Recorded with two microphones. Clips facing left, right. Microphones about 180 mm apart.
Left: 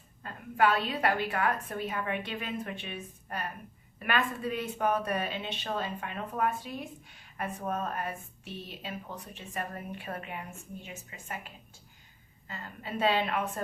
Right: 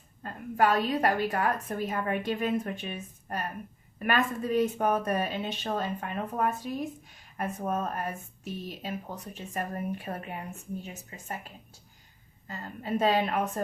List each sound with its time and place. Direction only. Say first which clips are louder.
0.2 s a woman's voice: right 1 dB; 40° right (ahead or behind)